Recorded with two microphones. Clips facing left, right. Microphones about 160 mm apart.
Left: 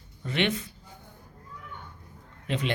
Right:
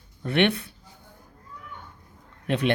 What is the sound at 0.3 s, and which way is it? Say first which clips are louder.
Speech: right 5 dB; 65° right (ahead or behind).